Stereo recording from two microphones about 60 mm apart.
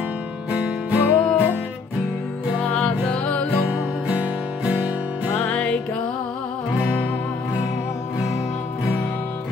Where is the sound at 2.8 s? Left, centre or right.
Centre.